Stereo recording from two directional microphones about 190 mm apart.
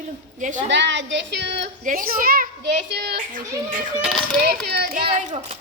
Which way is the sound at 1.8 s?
45° right (ahead or behind).